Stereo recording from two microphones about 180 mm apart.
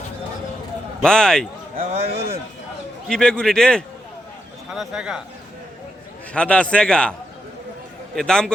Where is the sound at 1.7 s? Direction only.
35° right (ahead or behind).